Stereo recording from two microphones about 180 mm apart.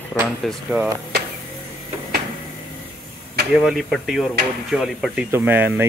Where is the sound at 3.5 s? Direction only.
Centre (ahead or behind).